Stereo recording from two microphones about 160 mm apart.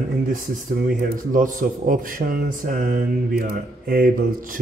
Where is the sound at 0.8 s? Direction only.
60° right (ahead or behind).